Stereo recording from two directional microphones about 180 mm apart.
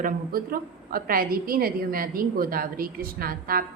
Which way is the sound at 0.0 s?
55° right (ahead or behind).